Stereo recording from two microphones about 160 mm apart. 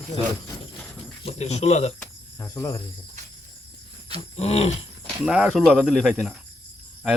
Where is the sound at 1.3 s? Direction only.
45° left (ahead or behind).